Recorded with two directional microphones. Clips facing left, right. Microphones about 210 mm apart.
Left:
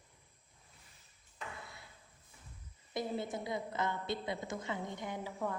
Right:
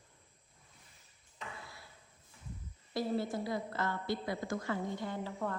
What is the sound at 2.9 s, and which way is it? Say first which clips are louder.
A woman's voice: right 3 dB; 20° left (ahead or behind).